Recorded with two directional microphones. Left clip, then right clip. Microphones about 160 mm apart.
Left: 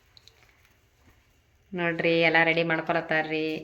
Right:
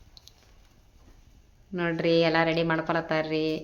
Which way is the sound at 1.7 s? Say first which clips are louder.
Even; 10° right (ahead or behind).